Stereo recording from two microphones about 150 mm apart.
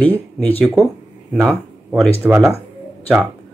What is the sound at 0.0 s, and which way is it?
Speech, 10° left (ahead or behind).